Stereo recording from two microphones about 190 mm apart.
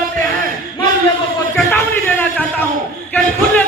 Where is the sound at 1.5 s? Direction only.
10° left (ahead or behind).